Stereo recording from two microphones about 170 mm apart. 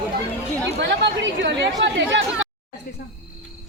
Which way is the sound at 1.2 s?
90° right.